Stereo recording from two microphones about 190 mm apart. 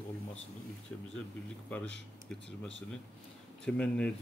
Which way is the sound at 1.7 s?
5° left (ahead or behind).